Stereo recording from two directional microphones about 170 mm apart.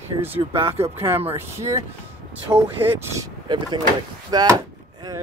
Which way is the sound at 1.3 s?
20° right (ahead or behind).